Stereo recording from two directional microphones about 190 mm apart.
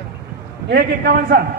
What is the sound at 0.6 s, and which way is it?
Speech, 55° right (ahead or behind).